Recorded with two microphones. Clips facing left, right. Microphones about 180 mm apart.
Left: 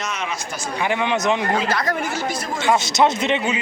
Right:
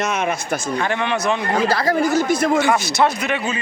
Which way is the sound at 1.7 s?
30° right (ahead or behind).